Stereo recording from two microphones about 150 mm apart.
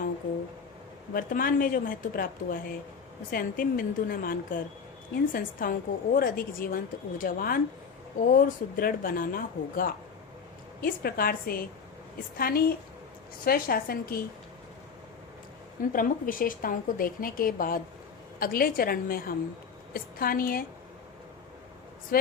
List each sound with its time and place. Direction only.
1.1 s a woman's voice: 75° left (ahead or behind)
15.9 s a woman's voice: 65° left (ahead or behind)
22.1 s a woman's voice: 80° left